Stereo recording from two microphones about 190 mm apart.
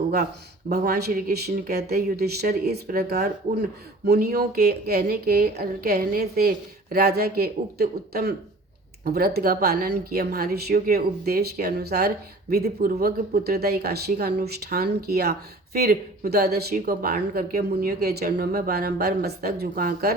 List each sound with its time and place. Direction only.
0.7 s a woman's voice: 55° right (ahead or behind)